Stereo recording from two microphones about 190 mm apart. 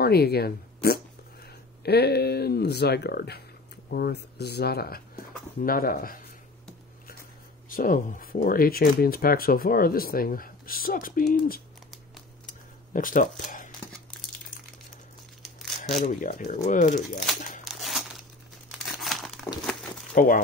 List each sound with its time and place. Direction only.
0.0 s speech: 55° left (ahead or behind)
7.7 s speech: 45° left (ahead or behind)
12.4 s a sound: 45° left (ahead or behind)
16.1 s speech: 45° left (ahead or behind)
17.6 s crumpling: centre (ahead or behind)
20.1 s speech: 45° left (ahead or behind)